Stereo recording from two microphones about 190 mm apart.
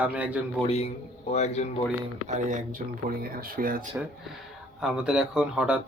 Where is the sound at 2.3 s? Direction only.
40° right (ahead or behind).